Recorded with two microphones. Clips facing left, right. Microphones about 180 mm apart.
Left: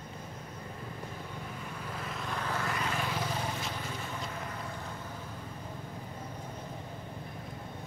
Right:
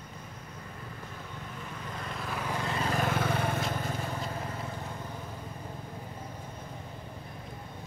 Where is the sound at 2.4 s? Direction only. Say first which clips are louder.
Right 1 dB; 15° right (ahead or behind).